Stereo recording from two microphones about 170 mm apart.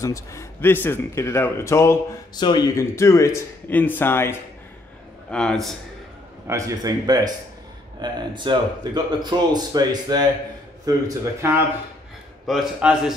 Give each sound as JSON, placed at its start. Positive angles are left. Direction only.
{"t": 0.0, "sound": "a man's voice", "side_deg": 20}
{"t": 6.4, "sound": "speech", "side_deg": -20}
{"t": 12.4, "sound": "a man's voice", "side_deg": 0}